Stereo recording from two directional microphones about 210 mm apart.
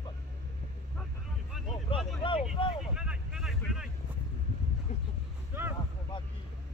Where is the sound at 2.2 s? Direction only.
25° left (ahead or behind).